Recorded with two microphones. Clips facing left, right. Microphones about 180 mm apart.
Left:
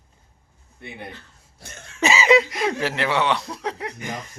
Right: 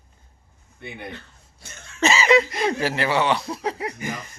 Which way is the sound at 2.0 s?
15° left (ahead or behind).